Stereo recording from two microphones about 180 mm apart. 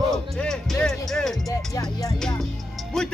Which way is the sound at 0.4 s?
5° left (ahead or behind).